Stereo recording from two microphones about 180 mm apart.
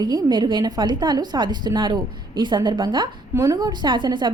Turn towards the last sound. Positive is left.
turn(degrees=-25)  # may be behind; listen again after turning